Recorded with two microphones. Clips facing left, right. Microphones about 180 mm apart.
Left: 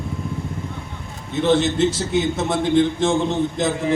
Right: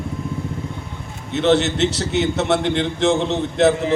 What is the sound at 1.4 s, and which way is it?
A man's voice, 70° right (ahead or behind).